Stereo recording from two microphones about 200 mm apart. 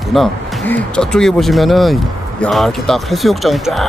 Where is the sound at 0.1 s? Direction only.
Centre (ahead or behind).